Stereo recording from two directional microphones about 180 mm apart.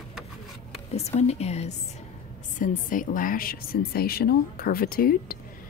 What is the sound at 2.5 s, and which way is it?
A woman's voice, 45° left (ahead or behind).